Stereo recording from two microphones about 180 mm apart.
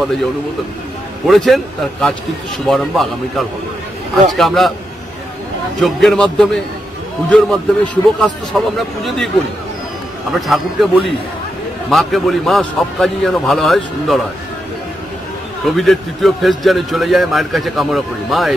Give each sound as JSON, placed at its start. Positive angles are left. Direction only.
{"t": 1.2, "sound": "a man's voice", "side_deg": 0}
{"t": 5.8, "sound": "a man's voice", "side_deg": 0}
{"t": 10.4, "sound": "a man's voice", "side_deg": 0}
{"t": 15.6, "sound": "a man's voice", "side_deg": 0}